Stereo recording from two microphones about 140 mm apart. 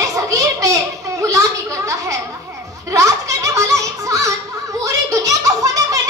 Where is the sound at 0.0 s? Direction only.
25° right (ahead or behind).